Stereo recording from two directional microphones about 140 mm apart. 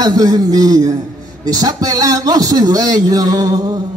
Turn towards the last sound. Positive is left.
turn(degrees=-25)  # may be behind; listen again after turning